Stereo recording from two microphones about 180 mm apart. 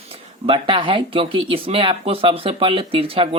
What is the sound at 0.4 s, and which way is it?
Speech, 30° right (ahead or behind).